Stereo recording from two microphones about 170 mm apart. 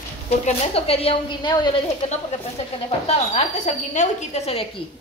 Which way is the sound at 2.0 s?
40° left (ahead or behind).